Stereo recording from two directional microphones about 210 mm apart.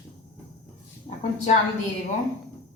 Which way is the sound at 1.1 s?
30° left (ahead or behind).